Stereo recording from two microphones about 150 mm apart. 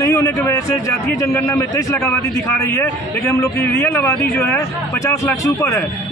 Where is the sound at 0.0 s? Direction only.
20° left (ahead or behind).